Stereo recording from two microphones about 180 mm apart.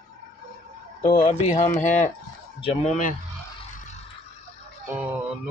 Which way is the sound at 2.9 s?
45° left (ahead or behind).